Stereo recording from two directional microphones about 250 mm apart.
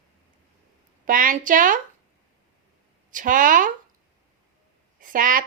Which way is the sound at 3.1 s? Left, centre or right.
Right.